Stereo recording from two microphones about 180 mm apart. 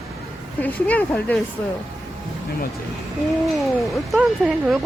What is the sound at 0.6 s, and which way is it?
Speech, 10° left (ahead or behind).